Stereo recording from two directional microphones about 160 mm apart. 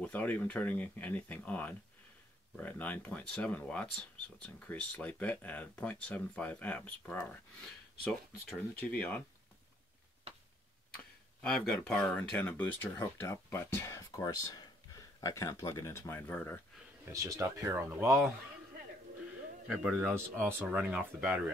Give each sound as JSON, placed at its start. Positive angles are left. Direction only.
{"t": 0.0, "sound": "speech", "side_deg": 10}
{"t": 11.4, "sound": "speech", "side_deg": 5}
{"t": 17.1, "sound": "speech", "side_deg": -20}
{"t": 19.7, "sound": "a man's voice", "side_deg": -5}
{"t": 20.2, "sound": "speech", "side_deg": -15}